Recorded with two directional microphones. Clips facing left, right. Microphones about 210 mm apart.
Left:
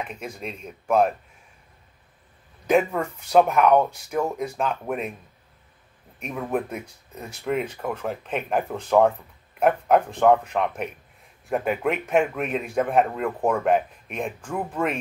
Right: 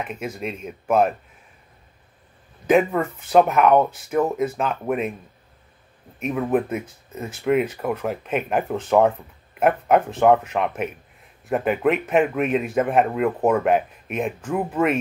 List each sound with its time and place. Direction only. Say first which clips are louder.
0.1 s speech: right 5 dB; 5° right (ahead or behind)
2.6 s speech: right 3 dB; centre (ahead or behind)
6.1 s speech: right 6 dB; 5° right (ahead or behind)